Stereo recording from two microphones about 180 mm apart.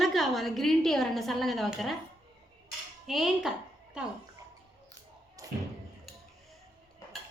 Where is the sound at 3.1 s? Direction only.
Centre (ahead or behind).